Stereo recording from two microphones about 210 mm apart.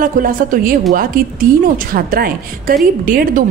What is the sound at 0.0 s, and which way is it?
A woman's voice, 40° right (ahead or behind).